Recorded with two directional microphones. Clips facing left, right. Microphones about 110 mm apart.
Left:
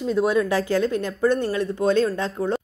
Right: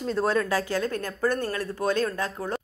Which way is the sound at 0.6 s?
25° left (ahead or behind).